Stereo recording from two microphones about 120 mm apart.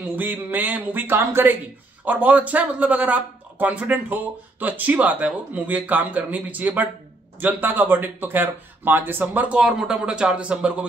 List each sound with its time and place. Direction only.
0.1 s speech: 15° right (ahead or behind)